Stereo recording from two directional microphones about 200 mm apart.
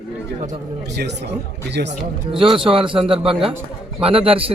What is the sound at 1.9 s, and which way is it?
A man's voice, 25° right (ahead or behind).